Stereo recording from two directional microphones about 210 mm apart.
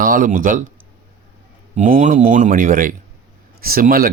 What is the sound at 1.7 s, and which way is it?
A man's voice, 35° right (ahead or behind).